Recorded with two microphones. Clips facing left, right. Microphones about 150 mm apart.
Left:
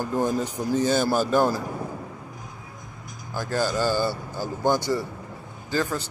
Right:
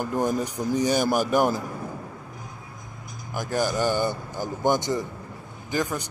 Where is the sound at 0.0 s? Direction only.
15° right (ahead or behind).